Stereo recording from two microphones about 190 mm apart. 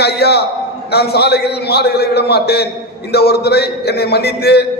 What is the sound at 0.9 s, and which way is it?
A man's voice, 60° left (ahead or behind).